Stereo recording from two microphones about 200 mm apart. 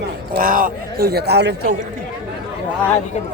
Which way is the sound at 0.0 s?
50° right (ahead or behind).